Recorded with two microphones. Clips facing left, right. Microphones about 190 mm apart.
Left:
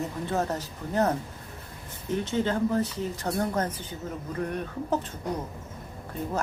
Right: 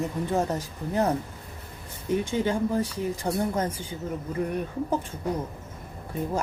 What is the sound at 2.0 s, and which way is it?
Speech, 10° right (ahead or behind).